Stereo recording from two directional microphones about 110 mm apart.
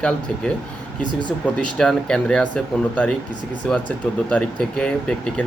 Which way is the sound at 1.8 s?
5° left (ahead or behind).